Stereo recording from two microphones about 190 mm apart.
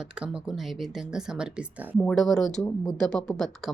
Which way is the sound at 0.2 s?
Centre (ahead or behind).